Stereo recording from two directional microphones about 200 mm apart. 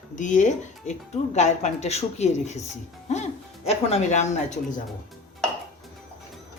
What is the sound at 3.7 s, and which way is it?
Speech, 30° left (ahead or behind).